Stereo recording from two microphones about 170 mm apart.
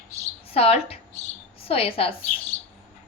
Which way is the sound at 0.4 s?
35° left (ahead or behind).